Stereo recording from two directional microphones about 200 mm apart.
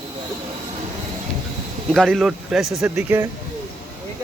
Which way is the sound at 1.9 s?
Centre (ahead or behind).